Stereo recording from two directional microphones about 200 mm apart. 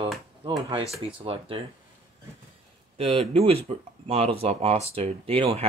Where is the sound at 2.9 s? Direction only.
30° right (ahead or behind).